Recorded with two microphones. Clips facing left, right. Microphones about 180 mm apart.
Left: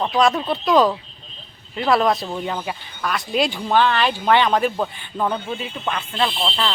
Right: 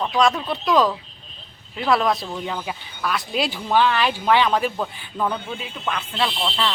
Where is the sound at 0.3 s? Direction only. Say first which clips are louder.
Left 3 dB; 25° left (ahead or behind).